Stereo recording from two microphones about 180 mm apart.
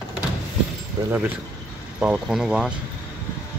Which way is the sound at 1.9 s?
5° right (ahead or behind).